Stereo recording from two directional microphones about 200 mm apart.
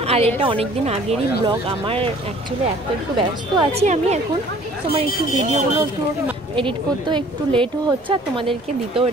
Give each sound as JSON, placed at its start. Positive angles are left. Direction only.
{"t": 0.0, "sound": "a woman's voice", "side_deg": -30}
{"t": 3.2, "sound": "speech", "side_deg": -30}